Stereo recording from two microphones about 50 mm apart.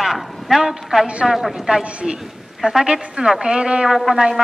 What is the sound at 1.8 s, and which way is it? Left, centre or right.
Speech, right.